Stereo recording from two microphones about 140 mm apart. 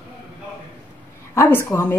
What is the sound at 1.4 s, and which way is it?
Speech, 15° left (ahead or behind).